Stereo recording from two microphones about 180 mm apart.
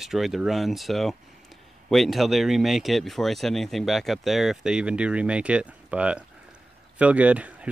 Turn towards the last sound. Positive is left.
turn(degrees=-5)  # may be behind; listen again after turning